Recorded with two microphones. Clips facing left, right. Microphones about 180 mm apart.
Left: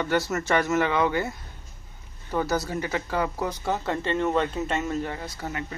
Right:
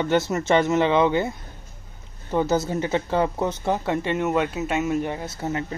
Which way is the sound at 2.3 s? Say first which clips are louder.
Right 4 dB; 25° right (ahead or behind).